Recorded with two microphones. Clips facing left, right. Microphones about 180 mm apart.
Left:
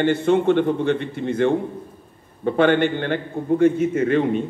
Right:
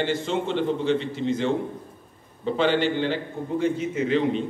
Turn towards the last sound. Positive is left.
turn(degrees=50)  # may be behind; listen again after turning